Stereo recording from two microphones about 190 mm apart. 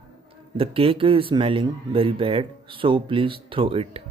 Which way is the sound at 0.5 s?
30° right (ahead or behind).